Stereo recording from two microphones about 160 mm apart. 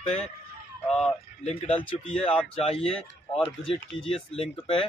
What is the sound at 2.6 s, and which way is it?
Speech, 35° left (ahead or behind).